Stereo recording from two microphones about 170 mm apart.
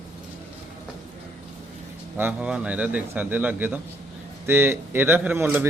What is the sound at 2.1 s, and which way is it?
Speech, 10° right (ahead or behind).